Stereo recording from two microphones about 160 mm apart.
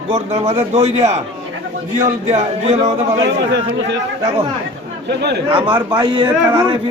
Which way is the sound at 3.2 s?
90° right.